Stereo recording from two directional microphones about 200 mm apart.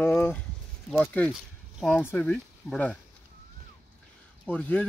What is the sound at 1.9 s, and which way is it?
Speech, 10° left (ahead or behind).